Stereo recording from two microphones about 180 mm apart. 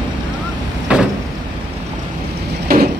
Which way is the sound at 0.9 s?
5° right (ahead or behind).